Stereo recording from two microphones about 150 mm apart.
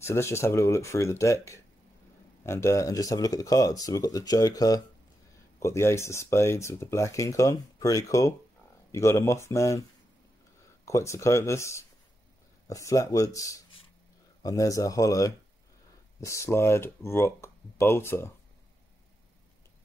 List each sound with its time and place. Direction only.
0.0 s speech: 15° left (ahead or behind)
10.9 s speech: 20° left (ahead or behind)